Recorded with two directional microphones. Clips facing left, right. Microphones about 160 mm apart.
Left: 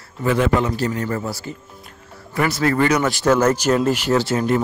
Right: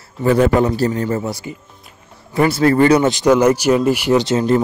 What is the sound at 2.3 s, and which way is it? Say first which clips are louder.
Speech: right 5 dB; 25° right (ahead or behind).